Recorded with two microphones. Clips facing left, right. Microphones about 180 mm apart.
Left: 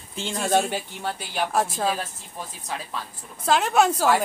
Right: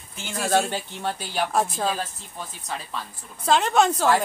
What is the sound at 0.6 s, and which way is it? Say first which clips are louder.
Speech: even; 10° left (ahead or behind).